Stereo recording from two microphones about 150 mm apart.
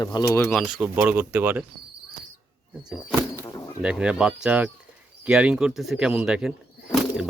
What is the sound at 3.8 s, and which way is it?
Speech, 5° right (ahead or behind).